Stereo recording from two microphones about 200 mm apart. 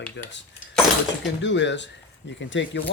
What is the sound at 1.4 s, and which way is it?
Speech, 65° left (ahead or behind).